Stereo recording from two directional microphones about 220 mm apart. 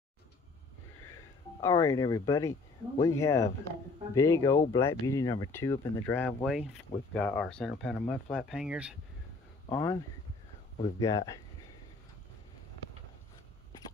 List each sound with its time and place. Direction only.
1.6 s speech: 15° left (ahead or behind); by 8.9 s 5° right (ahead or behind)
9.7 s speech: 10° left (ahead or behind)
11.0 s speech: 15° left (ahead or behind)